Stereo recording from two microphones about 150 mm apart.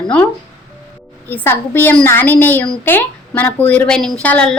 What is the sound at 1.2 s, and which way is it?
A woman's voice, 15° left (ahead or behind).